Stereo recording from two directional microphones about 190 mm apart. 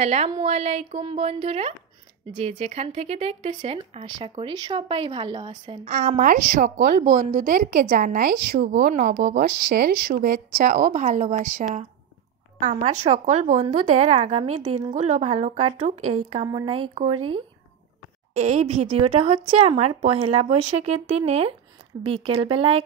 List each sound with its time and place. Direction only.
0.0 s speech: 35° right (ahead or behind)
5.9 s a woman's voice: 45° right (ahead or behind)
12.7 s speech: 35° right (ahead or behind)
16.4 s speech: 25° right (ahead or behind)
18.3 s speech: 35° right (ahead or behind)